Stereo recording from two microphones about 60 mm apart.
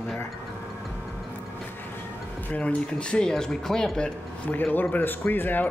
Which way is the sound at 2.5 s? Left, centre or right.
Centre.